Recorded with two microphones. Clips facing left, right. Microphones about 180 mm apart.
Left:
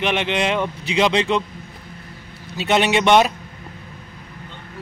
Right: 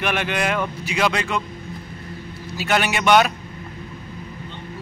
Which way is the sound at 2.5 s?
25° left (ahead or behind).